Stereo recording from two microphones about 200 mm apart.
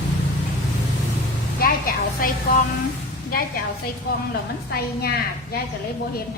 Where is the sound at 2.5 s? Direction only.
50° left (ahead or behind).